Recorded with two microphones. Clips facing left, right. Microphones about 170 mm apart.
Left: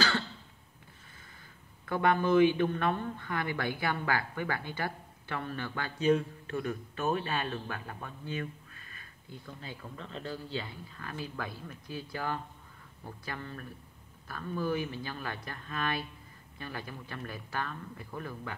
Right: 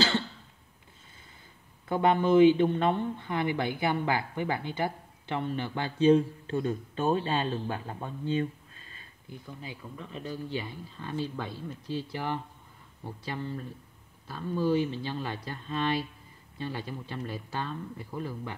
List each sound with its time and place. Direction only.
1.9 s speech: 25° right (ahead or behind)
9.6 s speech: 10° right (ahead or behind)